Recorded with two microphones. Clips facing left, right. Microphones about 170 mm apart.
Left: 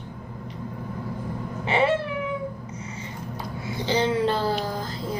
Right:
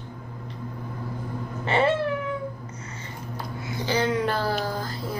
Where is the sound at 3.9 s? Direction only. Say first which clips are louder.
Left 2 dB; 25° left (ahead or behind).